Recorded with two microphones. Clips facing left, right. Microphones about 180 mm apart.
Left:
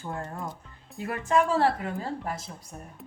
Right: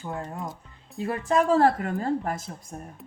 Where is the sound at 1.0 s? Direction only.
30° right (ahead or behind); by 2.5 s 50° right (ahead or behind).